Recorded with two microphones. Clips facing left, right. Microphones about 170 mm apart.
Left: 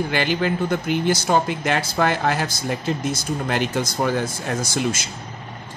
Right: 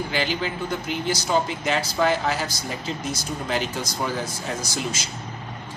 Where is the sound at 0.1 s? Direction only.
55° left (ahead or behind).